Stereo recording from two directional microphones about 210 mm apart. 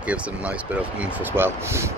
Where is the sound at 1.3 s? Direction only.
10° right (ahead or behind).